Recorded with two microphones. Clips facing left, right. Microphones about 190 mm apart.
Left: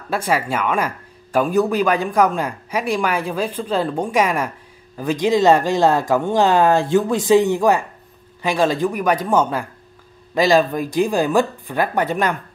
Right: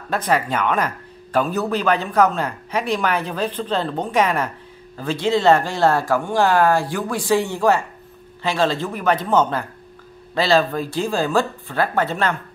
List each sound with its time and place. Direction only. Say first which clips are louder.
0.1 s speech: even; 10° left (ahead or behind)